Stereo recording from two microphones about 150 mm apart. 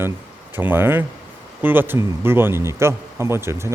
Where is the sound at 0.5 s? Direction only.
15° right (ahead or behind).